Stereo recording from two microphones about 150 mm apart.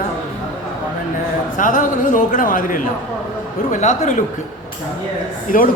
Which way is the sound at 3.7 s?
55° left (ahead or behind).